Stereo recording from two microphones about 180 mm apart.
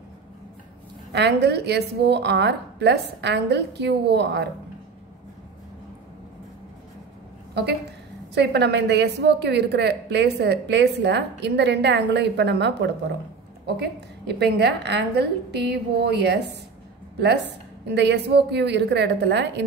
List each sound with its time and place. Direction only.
1.1 s a woman's voice: 70° right (ahead or behind)
8.4 s a woman's voice: 70° right (ahead or behind)
17.8 s a woman's voice: 70° right (ahead or behind)